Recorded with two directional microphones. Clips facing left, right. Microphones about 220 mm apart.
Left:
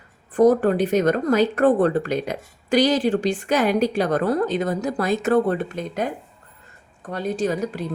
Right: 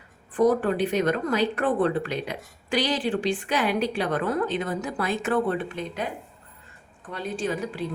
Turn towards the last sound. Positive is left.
turn(degrees=40)  # may be behind; listen again after turning